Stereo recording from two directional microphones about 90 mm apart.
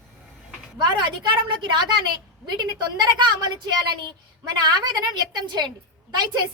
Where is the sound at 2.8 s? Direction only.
55° right (ahead or behind).